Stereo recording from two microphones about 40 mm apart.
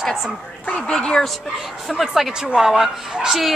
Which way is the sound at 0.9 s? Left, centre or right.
Left.